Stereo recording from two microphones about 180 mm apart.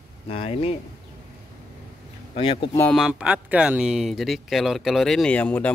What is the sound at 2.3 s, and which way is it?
Speech, 30° left (ahead or behind).